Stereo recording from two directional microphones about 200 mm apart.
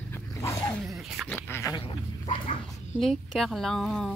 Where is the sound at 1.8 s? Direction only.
25° left (ahead or behind).